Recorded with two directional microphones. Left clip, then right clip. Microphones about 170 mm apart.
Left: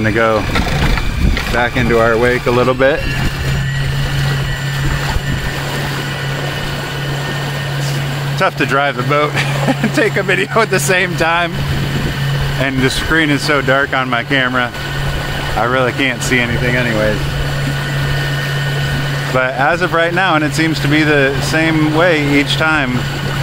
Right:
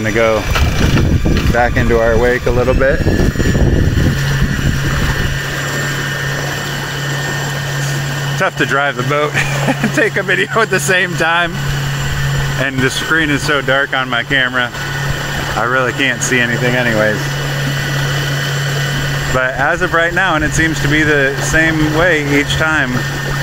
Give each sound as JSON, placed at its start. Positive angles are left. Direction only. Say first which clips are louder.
{"t": 0.0, "sound": "speech", "louder": "even", "side_deg": 5}
{"t": 1.6, "sound": "speech", "louder": "even", "side_deg": -10}
{"t": 8.4, "sound": "speech", "louder": "left 1 dB", "side_deg": -10}
{"t": 12.8, "sound": "speech", "louder": "even", "side_deg": -10}
{"t": 16.6, "sound": "speech", "louder": "right 2 dB", "side_deg": -20}
{"t": 19.3, "sound": "speech", "louder": "left 1 dB", "side_deg": 0}